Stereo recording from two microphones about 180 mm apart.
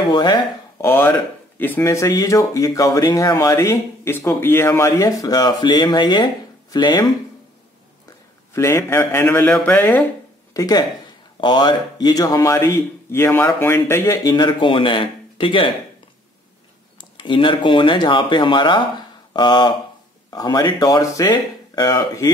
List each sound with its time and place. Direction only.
0.1 s speech: 25° left (ahead or behind)
0.8 s speech: 15° left (ahead or behind)
8.5 s speech: 15° left (ahead or behind)
10.5 s speech: 20° left (ahead or behind)
17.2 s speech: 25° left (ahead or behind)